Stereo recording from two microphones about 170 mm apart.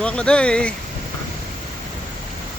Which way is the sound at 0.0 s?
5° left (ahead or behind).